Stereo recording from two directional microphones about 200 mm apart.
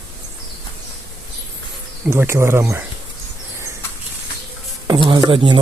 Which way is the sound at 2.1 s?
10° right (ahead or behind).